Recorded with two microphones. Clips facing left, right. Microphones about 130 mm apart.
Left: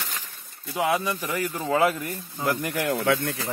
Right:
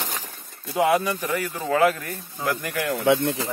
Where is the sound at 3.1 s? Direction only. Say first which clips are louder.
Right 4 dB; 25° right (ahead or behind).